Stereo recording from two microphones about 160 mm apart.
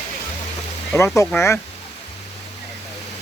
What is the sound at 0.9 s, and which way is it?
Speech, 20° left (ahead or behind).